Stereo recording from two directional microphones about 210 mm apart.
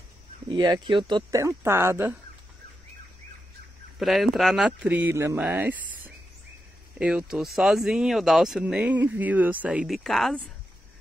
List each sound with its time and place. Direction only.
0.5 s speech: 20° right (ahead or behind)
4.0 s speech: centre (ahead or behind)